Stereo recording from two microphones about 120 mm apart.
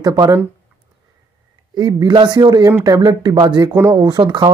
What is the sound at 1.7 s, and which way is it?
Speech, 35° right (ahead or behind).